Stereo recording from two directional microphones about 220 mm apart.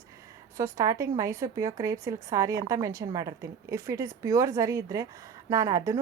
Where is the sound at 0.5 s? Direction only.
15° right (ahead or behind).